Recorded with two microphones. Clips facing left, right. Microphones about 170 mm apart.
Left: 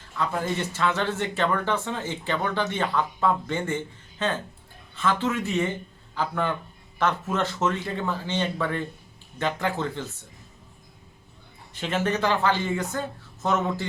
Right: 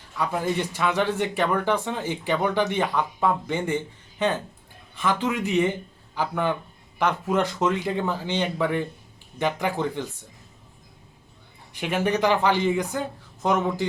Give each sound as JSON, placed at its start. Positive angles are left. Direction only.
{"t": 0.2, "sound": "speech", "side_deg": -15}
{"t": 11.7, "sound": "speech", "side_deg": -15}